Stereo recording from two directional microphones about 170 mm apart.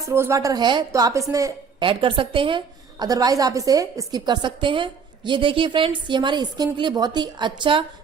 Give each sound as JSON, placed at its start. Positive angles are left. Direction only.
{"t": 0.0, "sound": "a woman's voice", "side_deg": -15}
{"t": 1.9, "sound": "a woman's voice", "side_deg": -30}